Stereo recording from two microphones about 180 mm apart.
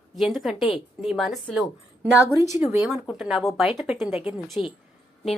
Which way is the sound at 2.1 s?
15° left (ahead or behind).